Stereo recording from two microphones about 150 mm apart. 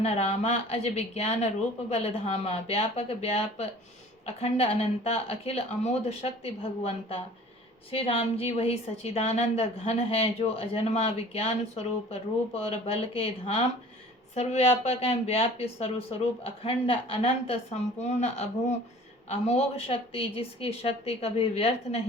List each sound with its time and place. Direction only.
0.0 s a woman's voice: 45° left (ahead or behind)